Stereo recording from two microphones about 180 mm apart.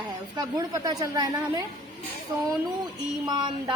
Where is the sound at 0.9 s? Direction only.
20° right (ahead or behind).